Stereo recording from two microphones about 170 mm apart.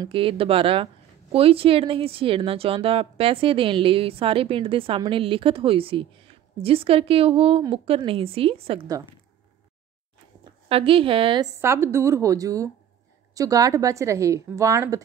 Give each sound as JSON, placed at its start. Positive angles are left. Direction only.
{"t": 0.0, "sound": "a woman's voice", "side_deg": -30}
{"t": 10.7, "sound": "a woman's voice", "side_deg": -35}
{"t": 11.6, "sound": "a woman's voice", "side_deg": -15}